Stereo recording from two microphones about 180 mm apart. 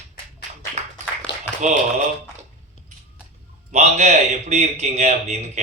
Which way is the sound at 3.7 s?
40° right (ahead or behind).